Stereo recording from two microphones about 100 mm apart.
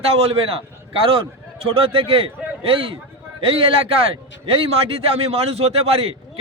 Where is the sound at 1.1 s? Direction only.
65° right (ahead or behind).